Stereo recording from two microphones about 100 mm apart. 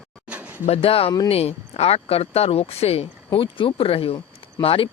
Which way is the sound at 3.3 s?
60° left (ahead or behind).